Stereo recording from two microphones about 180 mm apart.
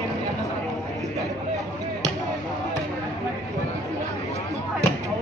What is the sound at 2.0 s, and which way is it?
Basketball bounce, 20° right (ahead or behind).